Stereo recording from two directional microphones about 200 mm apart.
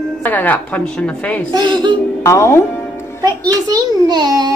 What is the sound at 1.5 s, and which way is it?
Speech, 20° right (ahead or behind).